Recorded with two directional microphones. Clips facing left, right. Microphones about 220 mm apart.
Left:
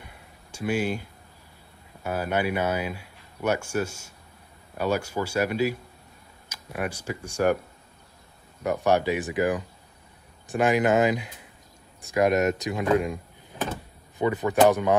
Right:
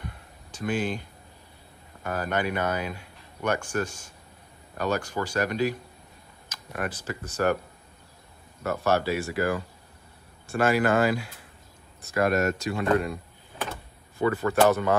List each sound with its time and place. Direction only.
0.0 s a sound: 10° left (ahead or behind)
2.0 s speech: 10° left (ahead or behind)
8.6 s speech: 15° left (ahead or behind)